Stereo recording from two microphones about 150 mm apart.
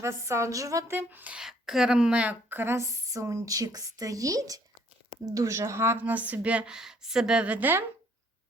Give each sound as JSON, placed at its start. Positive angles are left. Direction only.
{"t": 0.0, "sound": "a woman's voice", "side_deg": -20}